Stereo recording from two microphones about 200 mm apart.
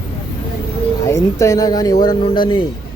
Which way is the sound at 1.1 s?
15° left (ahead or behind).